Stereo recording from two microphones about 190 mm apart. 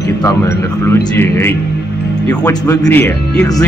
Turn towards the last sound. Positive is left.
turn(degrees=15)  # may be behind; listen again after turning